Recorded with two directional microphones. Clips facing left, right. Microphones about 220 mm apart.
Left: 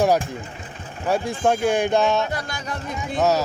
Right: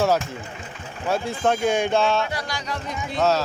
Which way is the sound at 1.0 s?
10° left (ahead or behind).